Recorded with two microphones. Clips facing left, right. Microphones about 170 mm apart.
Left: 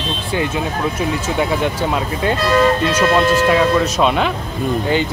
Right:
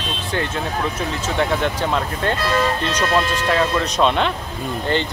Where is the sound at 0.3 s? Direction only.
10° left (ahead or behind).